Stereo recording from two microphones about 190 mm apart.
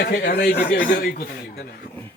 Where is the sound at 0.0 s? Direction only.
55° left (ahead or behind).